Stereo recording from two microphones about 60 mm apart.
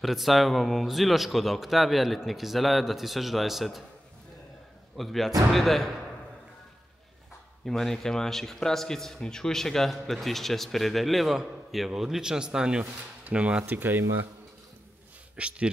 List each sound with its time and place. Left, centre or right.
0.0 s a man's voice: centre
4.9 s a man's voice: centre
7.6 s a man's voice: centre; by 13.7 s right
13.7 s speech: right
15.3 s speech: centre